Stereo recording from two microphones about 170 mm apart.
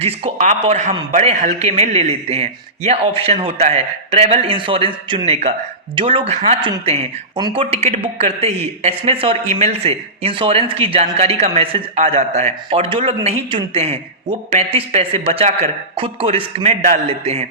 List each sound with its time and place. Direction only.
0.0 s a man's voice: 40° right (ahead or behind)